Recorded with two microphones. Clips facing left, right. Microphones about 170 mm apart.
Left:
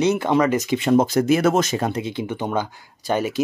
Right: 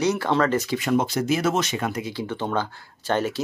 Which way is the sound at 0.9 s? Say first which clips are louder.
Left 6 dB; 45° left (ahead or behind).